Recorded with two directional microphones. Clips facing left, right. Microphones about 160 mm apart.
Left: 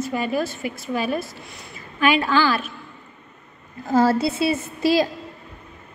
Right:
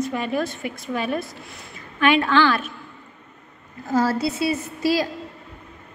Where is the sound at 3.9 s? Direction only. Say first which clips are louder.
Left 3 dB; 30° left (ahead or behind).